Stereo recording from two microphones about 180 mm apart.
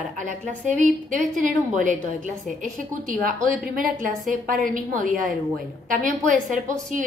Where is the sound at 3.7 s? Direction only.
50° right (ahead or behind).